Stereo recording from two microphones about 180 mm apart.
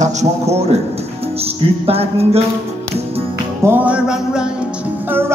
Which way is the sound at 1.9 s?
35° right (ahead or behind).